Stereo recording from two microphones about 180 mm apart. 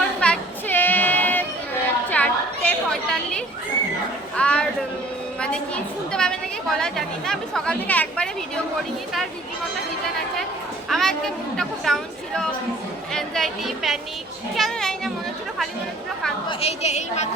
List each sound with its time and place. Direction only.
0.2 s a sound: 10° left (ahead or behind)
2.0 s chatter: 10° left (ahead or behind)
4.4 s a sound: 5° left (ahead or behind)
5.4 s a woman's voice: 5° left (ahead or behind)
10.8 s a child's voice: centre (ahead or behind)
16.5 s a woman's voice: 35° left (ahead or behind)